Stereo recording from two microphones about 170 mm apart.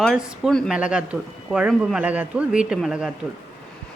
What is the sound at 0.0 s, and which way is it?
Speech, centre (ahead or behind).